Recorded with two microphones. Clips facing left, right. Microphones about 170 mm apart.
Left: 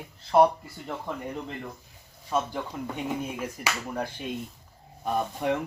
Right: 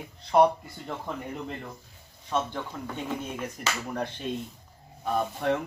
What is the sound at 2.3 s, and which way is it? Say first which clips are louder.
Speech: left 1 dB; 5° left (ahead or behind).